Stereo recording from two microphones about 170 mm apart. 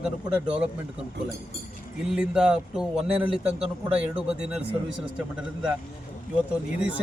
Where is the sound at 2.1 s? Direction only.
5° right (ahead or behind).